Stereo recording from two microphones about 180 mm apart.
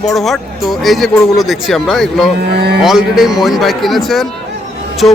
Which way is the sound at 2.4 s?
65° right (ahead or behind).